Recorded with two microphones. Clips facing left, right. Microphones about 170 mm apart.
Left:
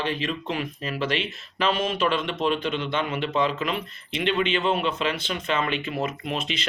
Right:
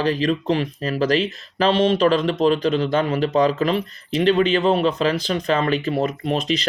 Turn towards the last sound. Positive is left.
turn(degrees=-40)  # may be behind; listen again after turning